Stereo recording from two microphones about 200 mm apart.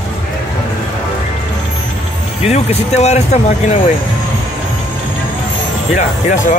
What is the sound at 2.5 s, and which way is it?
Speech, 35° left (ahead or behind).